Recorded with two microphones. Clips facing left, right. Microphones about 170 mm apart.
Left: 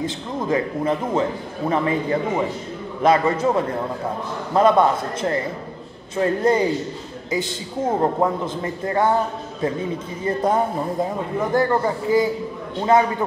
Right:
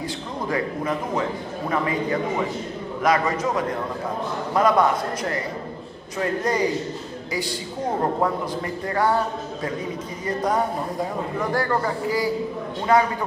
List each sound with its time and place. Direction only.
0.0 s a man's voice: 25° left (ahead or behind)